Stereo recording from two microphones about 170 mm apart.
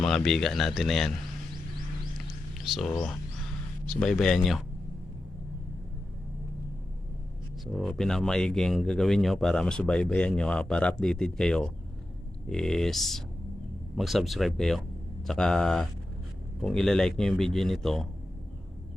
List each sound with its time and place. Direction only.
0.0 s speech: centre (ahead or behind)
2.7 s speech: 5° left (ahead or behind)
7.6 s speech: centre (ahead or behind)